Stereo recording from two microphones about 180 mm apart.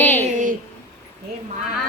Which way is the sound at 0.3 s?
45° right (ahead or behind).